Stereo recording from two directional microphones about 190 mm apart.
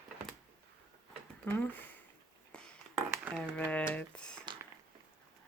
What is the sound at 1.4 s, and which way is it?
Speech, 10° left (ahead or behind).